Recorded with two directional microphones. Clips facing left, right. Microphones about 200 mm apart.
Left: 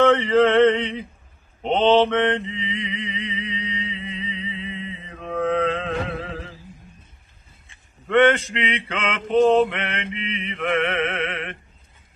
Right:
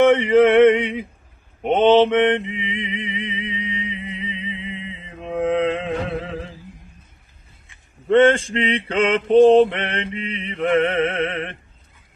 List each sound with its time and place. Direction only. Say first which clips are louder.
0.0 s male singing: right 3 dB; 15° right (ahead or behind)
1.6 s mantra: right 3 dB; 15° right (ahead or behind)
8.5 s mantra: right 7 dB; 30° right (ahead or behind)